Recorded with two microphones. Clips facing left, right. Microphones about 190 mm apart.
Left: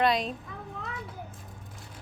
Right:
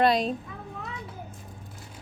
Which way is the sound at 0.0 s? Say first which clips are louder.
Right 3 dB; 35° right (ahead or behind).